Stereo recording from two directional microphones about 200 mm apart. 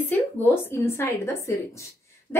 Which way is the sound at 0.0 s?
10° left (ahead or behind).